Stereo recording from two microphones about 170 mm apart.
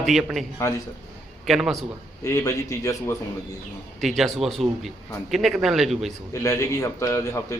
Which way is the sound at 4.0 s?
Centre (ahead or behind).